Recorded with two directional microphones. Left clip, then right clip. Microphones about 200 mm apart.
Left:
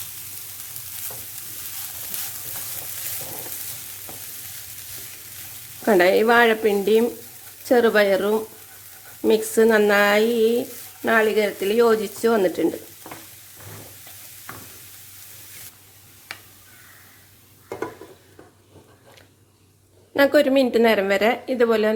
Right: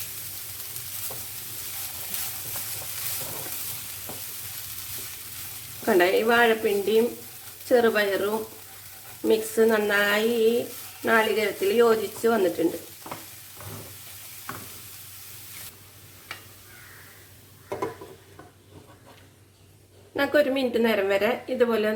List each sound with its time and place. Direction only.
5.8 s a woman's voice: 50° left (ahead or behind)
20.1 s a woman's voice: 50° left (ahead or behind)